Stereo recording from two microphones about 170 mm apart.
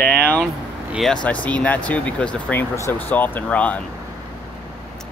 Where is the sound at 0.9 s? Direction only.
5° left (ahead or behind).